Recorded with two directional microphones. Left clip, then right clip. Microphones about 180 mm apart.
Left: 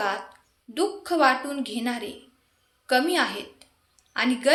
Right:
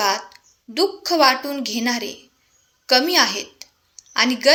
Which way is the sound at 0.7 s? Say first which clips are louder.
Right 6 dB; 30° right (ahead or behind).